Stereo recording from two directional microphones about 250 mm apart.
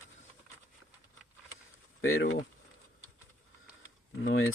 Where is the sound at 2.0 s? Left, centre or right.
Left.